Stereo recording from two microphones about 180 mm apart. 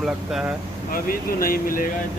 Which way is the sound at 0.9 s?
55° left (ahead or behind).